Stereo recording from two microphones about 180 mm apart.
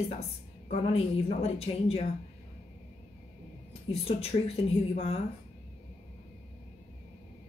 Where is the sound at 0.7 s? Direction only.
35° left (ahead or behind).